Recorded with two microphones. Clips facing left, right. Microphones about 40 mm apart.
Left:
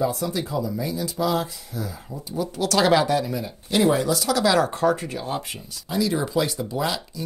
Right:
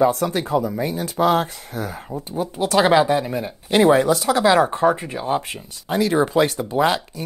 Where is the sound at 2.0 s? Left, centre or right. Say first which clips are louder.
Right 3 dB; right.